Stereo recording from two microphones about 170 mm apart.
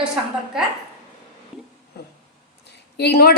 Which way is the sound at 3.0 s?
70° left (ahead or behind).